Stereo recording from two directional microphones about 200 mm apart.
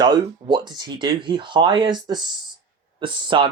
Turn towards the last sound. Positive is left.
turn(degrees=-25)  # may be behind; listen again after turning